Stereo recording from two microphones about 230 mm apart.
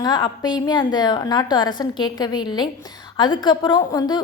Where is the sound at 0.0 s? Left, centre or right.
Centre.